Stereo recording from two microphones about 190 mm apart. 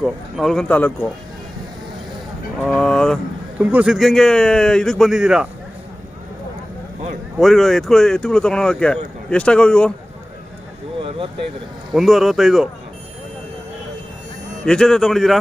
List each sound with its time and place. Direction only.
0.0 s speech: centre (ahead or behind)
2.6 s speech: centre (ahead or behind)
7.3 s speech: centre (ahead or behind)
11.0 s a sound: 30° right (ahead or behind)
11.9 s speech: centre (ahead or behind)
14.6 s speech: 5° left (ahead or behind)